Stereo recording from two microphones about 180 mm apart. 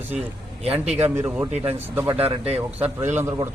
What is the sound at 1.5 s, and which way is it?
Speech, 35° right (ahead or behind).